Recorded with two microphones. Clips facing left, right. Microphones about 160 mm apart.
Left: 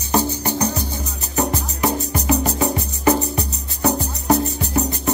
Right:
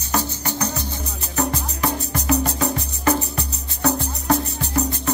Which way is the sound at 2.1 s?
5° left (ahead or behind).